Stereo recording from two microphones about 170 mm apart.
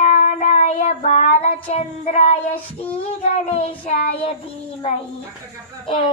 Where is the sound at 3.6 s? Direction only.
35° left (ahead or behind).